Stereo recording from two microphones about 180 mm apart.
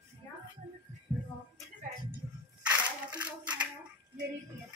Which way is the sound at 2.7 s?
20° right (ahead or behind).